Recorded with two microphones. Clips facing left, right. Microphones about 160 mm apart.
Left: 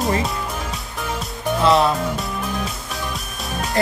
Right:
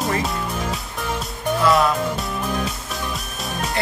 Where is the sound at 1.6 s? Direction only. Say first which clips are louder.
Left 2 dB; 25° left (ahead or behind).